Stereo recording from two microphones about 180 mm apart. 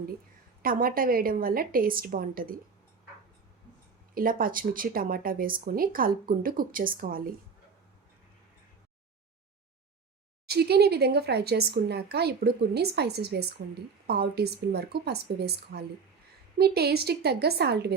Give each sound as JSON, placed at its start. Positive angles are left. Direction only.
{"t": 0.6, "sound": "speech", "side_deg": -55}
{"t": 4.1, "sound": "speech", "side_deg": -50}
{"t": 10.5, "sound": "speech", "side_deg": -65}